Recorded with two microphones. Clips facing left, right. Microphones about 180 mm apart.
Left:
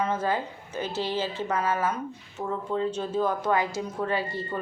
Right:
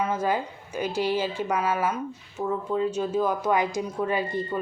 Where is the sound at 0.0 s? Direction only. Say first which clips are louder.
Right 1 dB; 10° right (ahead or behind).